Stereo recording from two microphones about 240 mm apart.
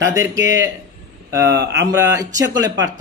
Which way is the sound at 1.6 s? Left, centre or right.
Right.